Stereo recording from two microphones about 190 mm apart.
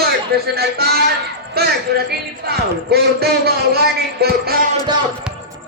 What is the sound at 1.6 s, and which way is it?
Music, 55° right (ahead or behind).